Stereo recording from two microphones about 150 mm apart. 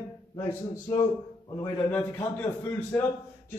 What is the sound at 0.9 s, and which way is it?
A man's voice, 15° left (ahead or behind).